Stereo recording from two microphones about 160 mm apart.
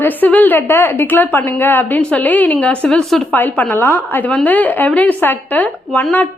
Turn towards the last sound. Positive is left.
turn(degrees=10)  # may be behind; listen again after turning